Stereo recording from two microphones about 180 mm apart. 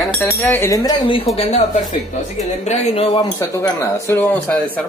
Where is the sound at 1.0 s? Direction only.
30° left (ahead or behind).